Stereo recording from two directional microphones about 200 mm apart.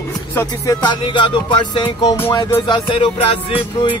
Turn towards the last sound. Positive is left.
turn(degrees=25)  # may be behind; listen again after turning